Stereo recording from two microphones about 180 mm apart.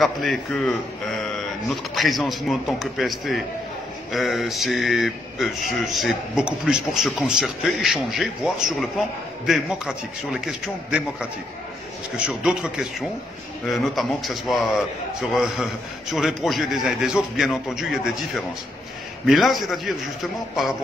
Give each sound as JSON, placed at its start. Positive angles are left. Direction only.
{"t": 0.0, "sound": "speech", "side_deg": 0}
{"t": 2.0, "sound": "speech", "side_deg": 0}
{"t": 12.3, "sound": "speech", "side_deg": -5}